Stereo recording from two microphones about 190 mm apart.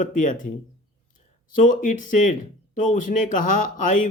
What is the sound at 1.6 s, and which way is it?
Speech, 45° left (ahead or behind).